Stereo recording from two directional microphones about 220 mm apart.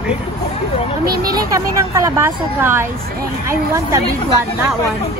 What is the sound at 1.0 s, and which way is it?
Speech, 45° right (ahead or behind).